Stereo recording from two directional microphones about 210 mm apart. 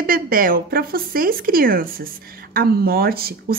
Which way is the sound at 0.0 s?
45° right (ahead or behind).